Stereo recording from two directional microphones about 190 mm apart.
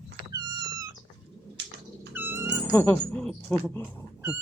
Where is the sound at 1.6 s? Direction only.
65° right (ahead or behind).